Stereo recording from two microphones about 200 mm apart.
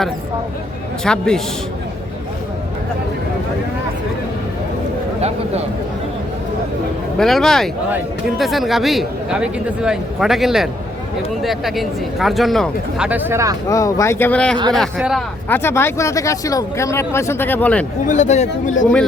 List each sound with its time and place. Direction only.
1.0 s speech: 5° left (ahead or behind)
7.2 s speech: centre (ahead or behind); by 13.6 s 15° right (ahead or behind)
13.7 s speech: 15° left (ahead or behind); by 15.2 s centre (ahead or behind)
15.4 s speech: 10° left (ahead or behind)
18.0 s speech: 35° left (ahead or behind)